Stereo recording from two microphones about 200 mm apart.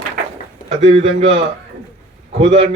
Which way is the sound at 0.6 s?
30° right (ahead or behind).